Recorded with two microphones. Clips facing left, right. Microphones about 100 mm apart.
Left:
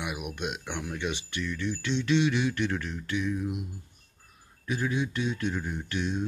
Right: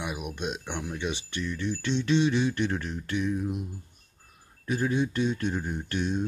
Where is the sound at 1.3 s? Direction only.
35° right (ahead or behind).